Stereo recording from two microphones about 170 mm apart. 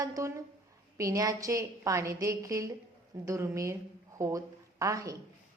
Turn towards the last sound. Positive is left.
turn(degrees=-20)  # may be behind; listen again after turning